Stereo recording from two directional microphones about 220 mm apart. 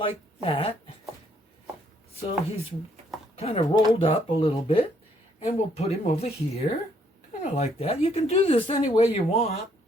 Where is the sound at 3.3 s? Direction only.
25° left (ahead or behind).